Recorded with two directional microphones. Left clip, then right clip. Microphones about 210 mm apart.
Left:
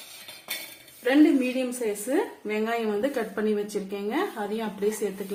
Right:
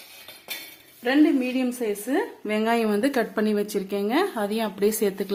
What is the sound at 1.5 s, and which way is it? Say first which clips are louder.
A woman's voice: right 2 dB; 40° right (ahead or behind).